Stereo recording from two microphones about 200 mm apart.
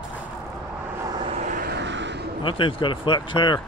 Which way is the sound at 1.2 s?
35° right (ahead or behind).